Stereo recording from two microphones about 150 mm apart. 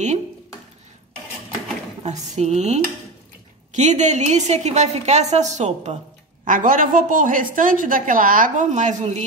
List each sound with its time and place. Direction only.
2.0 s a woman's voice: 50° right (ahead or behind)
6.4 s a woman's voice: 65° right (ahead or behind)